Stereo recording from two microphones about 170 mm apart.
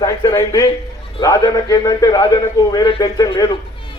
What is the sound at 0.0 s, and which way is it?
A man's voice, 20° left (ahead or behind).